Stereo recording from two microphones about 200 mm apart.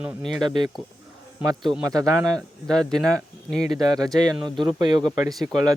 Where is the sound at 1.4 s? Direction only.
20° right (ahead or behind).